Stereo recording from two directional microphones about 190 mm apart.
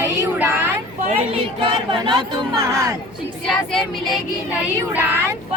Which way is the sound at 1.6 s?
25° right (ahead or behind).